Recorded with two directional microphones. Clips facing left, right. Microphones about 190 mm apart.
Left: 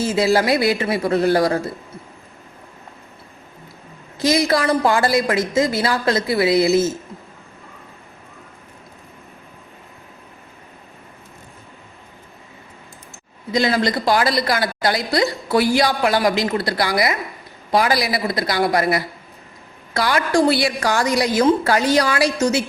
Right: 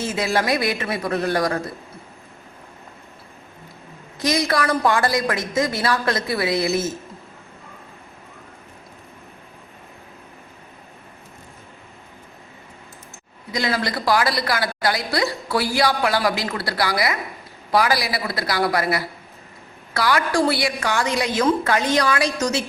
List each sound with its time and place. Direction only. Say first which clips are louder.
0.0 s a woman's voice: left 5 dB; 30° left (ahead or behind)
4.2 s a woman's voice: left 4 dB; 25° left (ahead or behind)
13.5 s a woman's voice: left 5 dB; 25° left (ahead or behind)
20.8 s a woman's voice: left 4 dB; 40° left (ahead or behind)